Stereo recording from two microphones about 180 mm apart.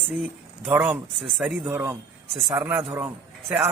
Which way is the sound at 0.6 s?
10° right (ahead or behind).